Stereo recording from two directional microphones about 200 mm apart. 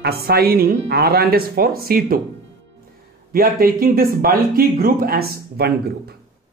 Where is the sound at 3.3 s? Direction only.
45° right (ahead or behind).